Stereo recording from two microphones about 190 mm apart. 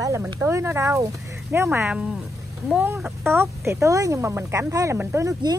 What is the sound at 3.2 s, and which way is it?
Speech, 15° right (ahead or behind).